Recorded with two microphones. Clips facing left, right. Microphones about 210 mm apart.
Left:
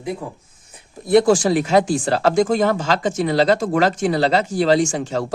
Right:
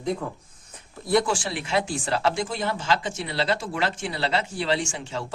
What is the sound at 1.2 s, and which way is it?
Speech, 45° left (ahead or behind).